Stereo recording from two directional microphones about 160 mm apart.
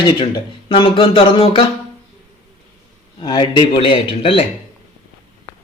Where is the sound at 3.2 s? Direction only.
30° left (ahead or behind).